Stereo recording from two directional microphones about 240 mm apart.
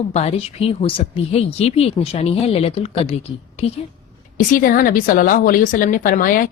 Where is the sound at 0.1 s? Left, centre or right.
Left.